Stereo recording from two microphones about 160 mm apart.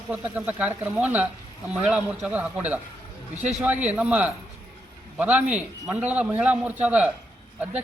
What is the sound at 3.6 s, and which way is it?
Speech, 10° right (ahead or behind).